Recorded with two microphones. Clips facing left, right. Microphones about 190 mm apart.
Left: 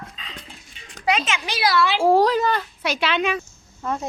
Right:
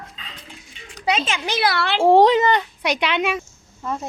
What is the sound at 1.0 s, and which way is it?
Speech, 25° right (ahead or behind).